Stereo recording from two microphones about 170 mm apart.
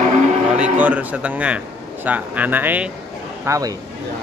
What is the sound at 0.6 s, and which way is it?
A man's voice, 10° right (ahead or behind).